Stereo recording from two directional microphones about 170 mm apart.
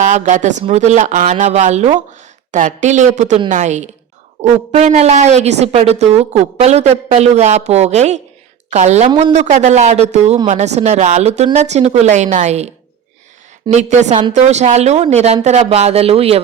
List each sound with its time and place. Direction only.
0.0 s speech: 45° right (ahead or behind)